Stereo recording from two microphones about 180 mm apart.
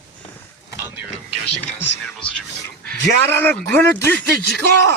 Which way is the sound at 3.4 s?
10° left (ahead or behind).